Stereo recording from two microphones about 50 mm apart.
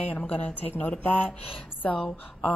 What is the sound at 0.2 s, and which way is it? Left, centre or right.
Speech, left.